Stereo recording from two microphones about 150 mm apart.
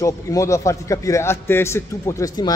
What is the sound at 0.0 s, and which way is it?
Speech, 20° left (ahead or behind).